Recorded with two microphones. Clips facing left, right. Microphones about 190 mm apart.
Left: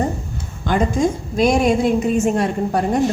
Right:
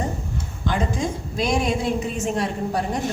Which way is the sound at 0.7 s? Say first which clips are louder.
Left 7 dB; 50° left (ahead or behind).